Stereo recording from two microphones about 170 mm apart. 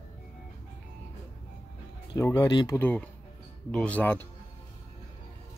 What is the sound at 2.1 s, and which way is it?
Speech, 20° left (ahead or behind).